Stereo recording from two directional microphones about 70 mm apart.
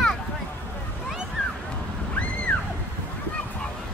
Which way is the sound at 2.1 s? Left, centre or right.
Left.